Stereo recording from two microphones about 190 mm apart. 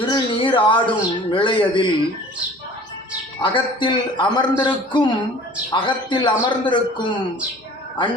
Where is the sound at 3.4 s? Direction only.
25° left (ahead or behind).